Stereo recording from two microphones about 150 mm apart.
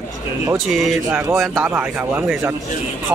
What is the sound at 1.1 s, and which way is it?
Speech, 15° right (ahead or behind).